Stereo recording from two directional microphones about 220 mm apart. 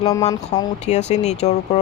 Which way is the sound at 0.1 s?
15° left (ahead or behind).